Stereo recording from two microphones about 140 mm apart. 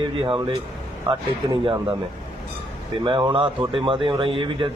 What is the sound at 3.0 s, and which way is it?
Speech, 35° right (ahead or behind).